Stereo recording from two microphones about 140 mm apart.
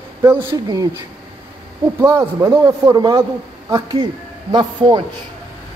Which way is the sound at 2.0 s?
20° right (ahead or behind).